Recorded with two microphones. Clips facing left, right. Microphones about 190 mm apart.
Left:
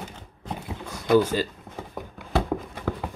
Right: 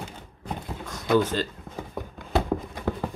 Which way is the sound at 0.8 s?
10° left (ahead or behind).